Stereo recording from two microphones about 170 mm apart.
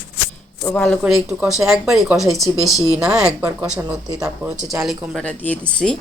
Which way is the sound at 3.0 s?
5° right (ahead or behind).